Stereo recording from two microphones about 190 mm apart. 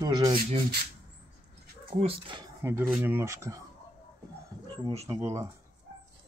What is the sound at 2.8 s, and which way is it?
Speech, 5° right (ahead or behind).